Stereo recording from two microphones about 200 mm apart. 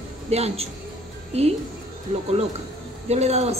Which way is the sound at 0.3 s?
30° right (ahead or behind).